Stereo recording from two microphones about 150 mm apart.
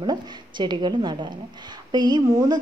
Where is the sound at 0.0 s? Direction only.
30° right (ahead or behind).